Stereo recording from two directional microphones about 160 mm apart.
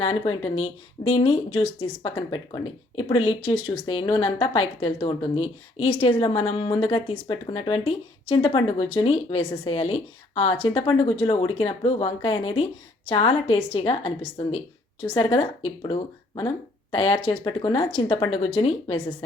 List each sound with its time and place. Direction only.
0.0 s a woman's voice: 35° left (ahead or behind)